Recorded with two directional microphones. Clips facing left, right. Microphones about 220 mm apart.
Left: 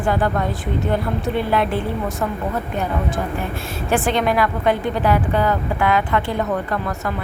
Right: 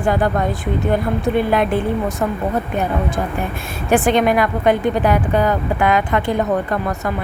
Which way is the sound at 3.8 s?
15° right (ahead or behind).